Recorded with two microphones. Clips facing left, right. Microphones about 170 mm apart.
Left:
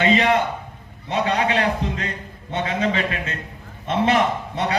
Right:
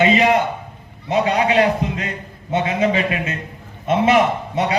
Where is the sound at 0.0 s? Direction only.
10° right (ahead or behind).